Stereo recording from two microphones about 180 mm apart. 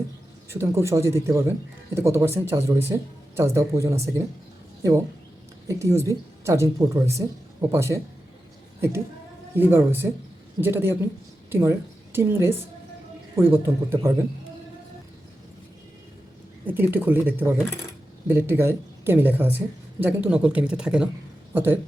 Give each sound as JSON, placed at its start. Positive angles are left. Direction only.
{"t": 0.5, "sound": "a woman's voice", "side_deg": -15}
{"t": 9.6, "sound": "a woman's voice", "side_deg": -10}
{"t": 16.6, "sound": "a woman's voice", "side_deg": -10}